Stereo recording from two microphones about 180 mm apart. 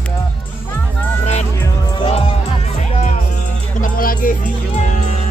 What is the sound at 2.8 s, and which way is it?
Music, 40° left (ahead or behind).